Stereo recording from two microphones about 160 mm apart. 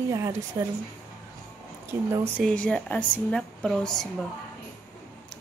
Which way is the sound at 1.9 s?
15° right (ahead or behind).